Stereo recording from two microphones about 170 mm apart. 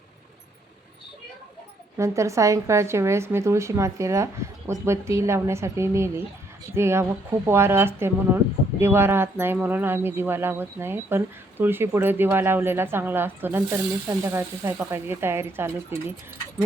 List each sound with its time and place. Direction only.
2.0 s speech: 15° right (ahead or behind)